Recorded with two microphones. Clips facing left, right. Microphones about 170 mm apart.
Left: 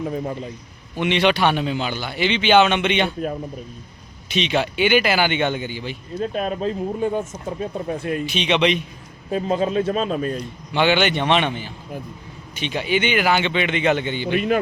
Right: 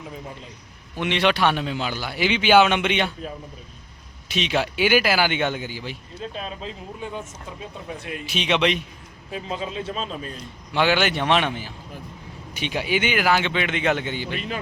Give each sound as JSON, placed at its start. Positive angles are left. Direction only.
{"t": 0.0, "sound": "a man's voice", "side_deg": 55}
{"t": 0.9, "sound": "a man's voice", "side_deg": 0}
{"t": 4.3, "sound": "a man's voice", "side_deg": -5}
{"t": 6.1, "sound": "speech", "side_deg": 50}
{"t": 8.3, "sound": "a man's voice", "side_deg": 0}
{"t": 9.3, "sound": "speech", "side_deg": 45}
{"t": 10.7, "sound": "a man's voice", "side_deg": 0}
{"t": 14.3, "sound": "speech", "side_deg": 55}